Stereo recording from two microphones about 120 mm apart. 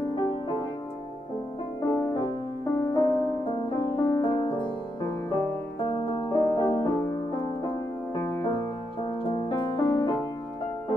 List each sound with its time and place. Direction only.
0.1 s music: 45° left (ahead or behind)
1.8 s music: 30° left (ahead or behind)
5.9 s music: 40° left (ahead or behind)